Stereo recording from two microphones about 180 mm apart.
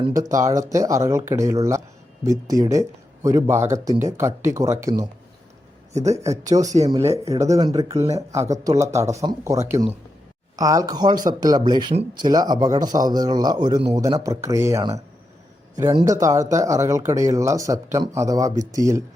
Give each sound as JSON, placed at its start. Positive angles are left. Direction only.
{"t": 0.1, "sound": "speech", "side_deg": -20}